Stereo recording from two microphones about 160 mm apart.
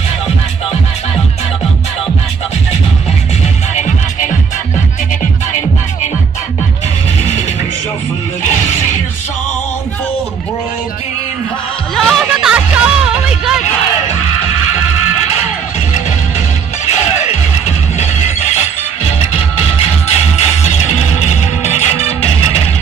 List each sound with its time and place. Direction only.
3.7 s music: 45° left (ahead or behind)
11.9 s music: centre (ahead or behind)
19.0 s music: 40° left (ahead or behind)